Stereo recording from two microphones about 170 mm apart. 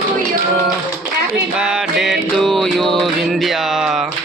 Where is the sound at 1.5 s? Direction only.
5° right (ahead or behind).